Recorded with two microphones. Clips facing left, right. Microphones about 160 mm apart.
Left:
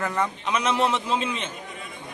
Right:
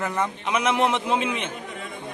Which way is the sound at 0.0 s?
15° right (ahead or behind).